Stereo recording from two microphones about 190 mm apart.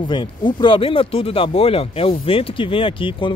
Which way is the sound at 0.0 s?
25° left (ahead or behind).